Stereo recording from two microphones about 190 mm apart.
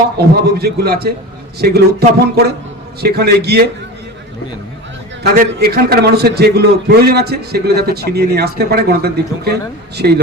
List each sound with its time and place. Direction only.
0.6 s a man's voice: 55° right (ahead or behind)
5.2 s a man's voice: 55° right (ahead or behind)